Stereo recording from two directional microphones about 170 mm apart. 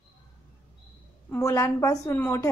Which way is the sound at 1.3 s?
20° left (ahead or behind).